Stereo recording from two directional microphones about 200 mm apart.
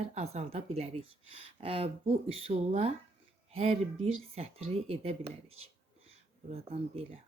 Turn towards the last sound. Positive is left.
turn(degrees=-30)  # may be behind; listen again after turning